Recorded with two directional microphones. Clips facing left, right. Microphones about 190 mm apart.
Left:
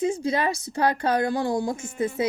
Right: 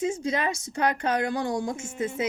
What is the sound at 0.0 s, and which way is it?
A woman's voice, 35° left (ahead or behind).